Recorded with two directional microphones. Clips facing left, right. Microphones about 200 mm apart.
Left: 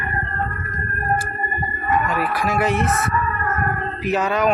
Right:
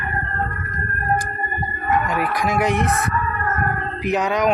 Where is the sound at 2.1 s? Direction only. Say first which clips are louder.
Even; 15° right (ahead or behind).